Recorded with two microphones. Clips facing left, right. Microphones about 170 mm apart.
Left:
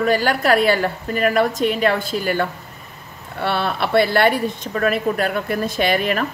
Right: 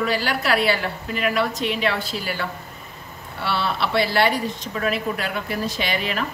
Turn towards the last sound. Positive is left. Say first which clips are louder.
# left 6 dB
turn(degrees=50)  # may be behind; listen again after turning